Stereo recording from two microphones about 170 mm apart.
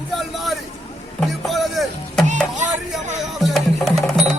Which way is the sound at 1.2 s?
Centre (ahead or behind).